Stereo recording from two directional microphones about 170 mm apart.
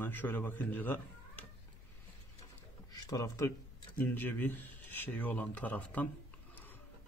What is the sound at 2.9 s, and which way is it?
Speech, 20° left (ahead or behind).